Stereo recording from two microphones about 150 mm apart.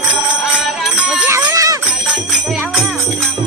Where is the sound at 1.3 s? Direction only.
20° right (ahead or behind).